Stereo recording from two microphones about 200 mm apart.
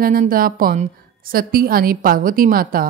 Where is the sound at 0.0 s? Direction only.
45° right (ahead or behind).